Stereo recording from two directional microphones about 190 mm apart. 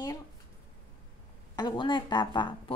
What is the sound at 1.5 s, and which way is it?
A woman's voice, 25° left (ahead or behind).